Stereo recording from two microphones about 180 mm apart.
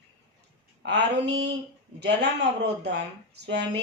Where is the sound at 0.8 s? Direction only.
75° right (ahead or behind).